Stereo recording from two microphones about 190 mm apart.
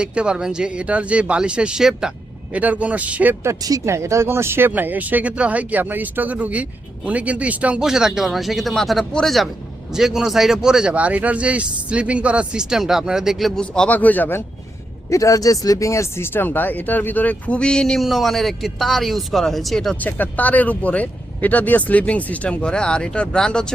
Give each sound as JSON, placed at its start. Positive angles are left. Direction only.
{"t": 0.0, "sound": "speech", "side_deg": -5}